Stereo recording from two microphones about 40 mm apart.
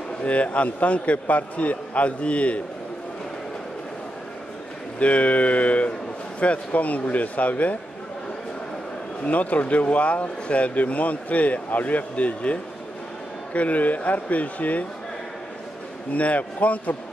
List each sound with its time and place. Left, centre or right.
0.2 s speech: left
4.9 s speech: left
9.2 s speech: left
16.1 s speech: left